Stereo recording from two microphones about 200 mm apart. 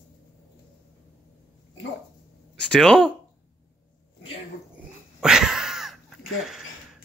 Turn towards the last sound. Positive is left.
turn(degrees=0)  # may be behind; listen again after turning